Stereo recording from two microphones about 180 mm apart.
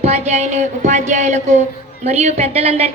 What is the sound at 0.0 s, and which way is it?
A woman's voice, 40° right (ahead or behind).